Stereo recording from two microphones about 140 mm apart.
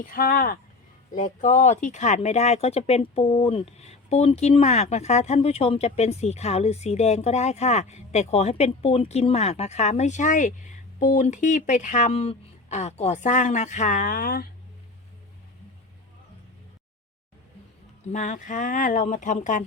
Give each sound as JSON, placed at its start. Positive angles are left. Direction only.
{"t": 0.0, "sound": "speech", "side_deg": 90}
{"t": 1.1, "sound": "speech", "side_deg": 65}
{"t": 18.1, "sound": "speech", "side_deg": 60}